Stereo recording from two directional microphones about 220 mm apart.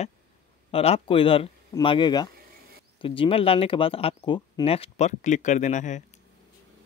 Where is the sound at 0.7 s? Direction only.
25° left (ahead or behind).